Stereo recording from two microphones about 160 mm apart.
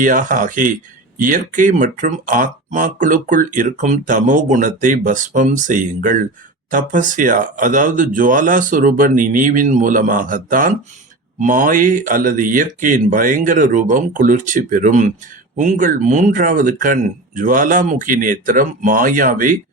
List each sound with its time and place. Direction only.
0.0 s speech: 55° right (ahead or behind)